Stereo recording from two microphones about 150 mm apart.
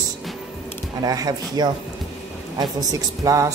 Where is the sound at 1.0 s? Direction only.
25° right (ahead or behind).